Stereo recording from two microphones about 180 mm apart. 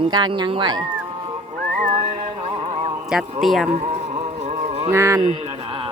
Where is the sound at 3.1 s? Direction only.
Centre (ahead or behind).